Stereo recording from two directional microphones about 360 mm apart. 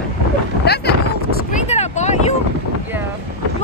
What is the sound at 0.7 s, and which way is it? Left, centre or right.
Speech, left.